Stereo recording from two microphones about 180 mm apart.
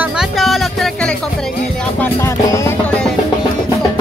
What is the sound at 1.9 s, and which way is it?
Music, 15° left (ahead or behind).